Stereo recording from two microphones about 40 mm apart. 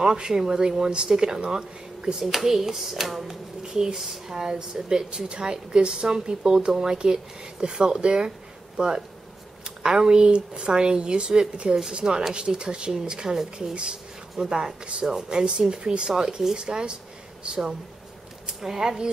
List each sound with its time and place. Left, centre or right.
0.0 s speech: centre
2.1 s speech: centre
18.5 s speech: centre